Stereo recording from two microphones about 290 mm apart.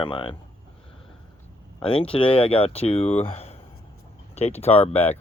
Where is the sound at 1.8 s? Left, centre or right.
Centre.